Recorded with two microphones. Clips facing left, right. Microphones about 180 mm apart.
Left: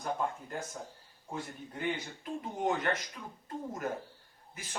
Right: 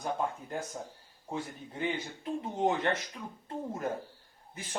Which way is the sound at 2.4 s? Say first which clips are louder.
Right 3 dB; 25° right (ahead or behind).